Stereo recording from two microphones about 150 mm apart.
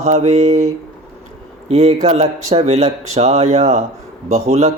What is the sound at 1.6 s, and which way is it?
Speech, 45° right (ahead or behind).